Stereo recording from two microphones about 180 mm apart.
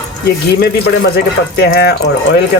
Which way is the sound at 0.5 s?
65° left (ahead or behind).